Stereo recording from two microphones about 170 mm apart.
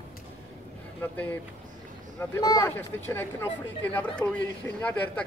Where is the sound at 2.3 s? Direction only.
20° left (ahead or behind).